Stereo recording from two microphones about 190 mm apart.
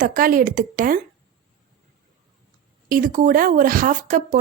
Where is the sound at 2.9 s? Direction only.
45° right (ahead or behind).